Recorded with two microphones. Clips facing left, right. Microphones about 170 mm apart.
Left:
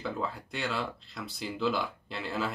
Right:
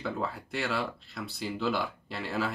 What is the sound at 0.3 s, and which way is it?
Speech, centre (ahead or behind).